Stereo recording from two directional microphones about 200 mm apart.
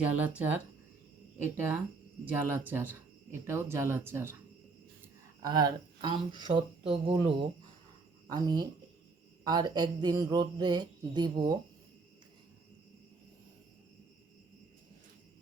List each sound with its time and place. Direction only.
0.0 s speech: 5° right (ahead or behind)
1.5 s speech: 10° right (ahead or behind)
5.4 s speech: 20° right (ahead or behind)
8.3 s speech: 20° right (ahead or behind)